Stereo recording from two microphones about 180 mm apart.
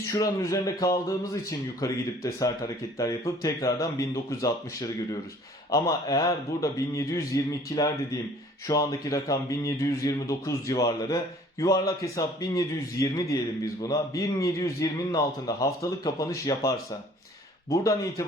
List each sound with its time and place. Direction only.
0.1 s a man's voice: 20° left (ahead or behind)